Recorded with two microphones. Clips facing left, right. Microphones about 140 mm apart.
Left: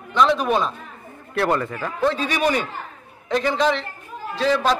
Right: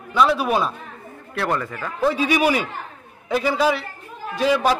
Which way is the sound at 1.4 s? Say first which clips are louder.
Left 3 dB; 20° left (ahead or behind).